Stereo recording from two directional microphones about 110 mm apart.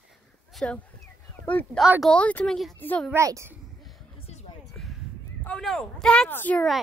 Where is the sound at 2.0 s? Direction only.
10° left (ahead or behind).